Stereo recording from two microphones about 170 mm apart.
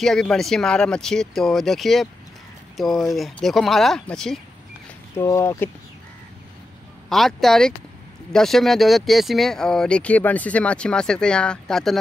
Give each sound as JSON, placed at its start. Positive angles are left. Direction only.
{"t": 0.0, "sound": "speech", "side_deg": 0}
{"t": 5.1, "sound": "speech", "side_deg": 15}
{"t": 7.1, "sound": "speech", "side_deg": 0}